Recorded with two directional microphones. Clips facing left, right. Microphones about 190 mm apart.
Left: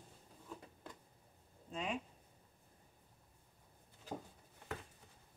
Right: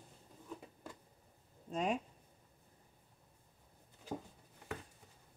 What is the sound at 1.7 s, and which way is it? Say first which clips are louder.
Speech: right 6 dB; 45° right (ahead or behind).